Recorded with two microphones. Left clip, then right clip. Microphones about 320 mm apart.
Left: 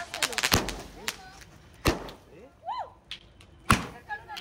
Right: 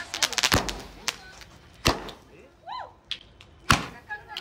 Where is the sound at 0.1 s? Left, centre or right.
Centre.